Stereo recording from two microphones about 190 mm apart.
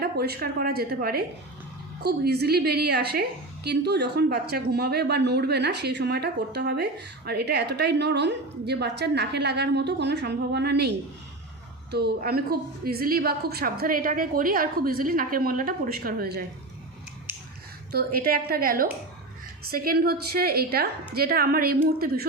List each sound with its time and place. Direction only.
0.0 s a woman's voice: 55° right (ahead or behind)
17.9 s a woman's voice: 50° right (ahead or behind)